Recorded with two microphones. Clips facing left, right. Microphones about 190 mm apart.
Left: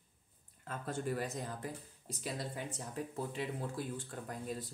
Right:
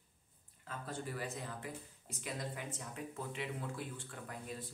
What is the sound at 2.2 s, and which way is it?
Speech, 30° left (ahead or behind).